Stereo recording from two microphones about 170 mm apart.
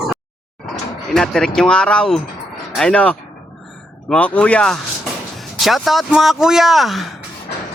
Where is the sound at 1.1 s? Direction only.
5° left (ahead or behind).